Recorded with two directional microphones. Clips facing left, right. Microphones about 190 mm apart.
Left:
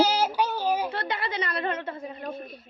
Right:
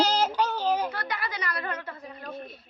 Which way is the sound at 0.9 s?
25° left (ahead or behind).